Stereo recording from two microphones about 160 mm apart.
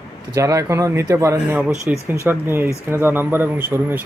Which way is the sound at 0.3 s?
20° right (ahead or behind).